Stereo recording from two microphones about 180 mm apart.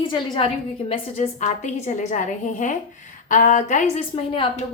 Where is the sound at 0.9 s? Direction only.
40° left (ahead or behind).